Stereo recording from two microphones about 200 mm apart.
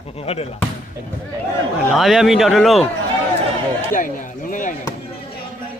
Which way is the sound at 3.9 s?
40° left (ahead or behind).